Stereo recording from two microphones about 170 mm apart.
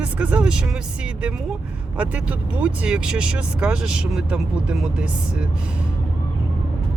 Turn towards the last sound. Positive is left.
turn(degrees=-5)  # may be behind; listen again after turning